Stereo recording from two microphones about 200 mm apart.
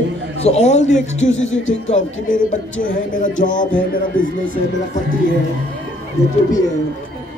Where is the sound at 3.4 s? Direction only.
40° left (ahead or behind).